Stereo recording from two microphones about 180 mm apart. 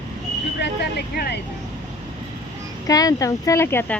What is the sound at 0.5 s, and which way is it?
Speech, 65° left (ahead or behind).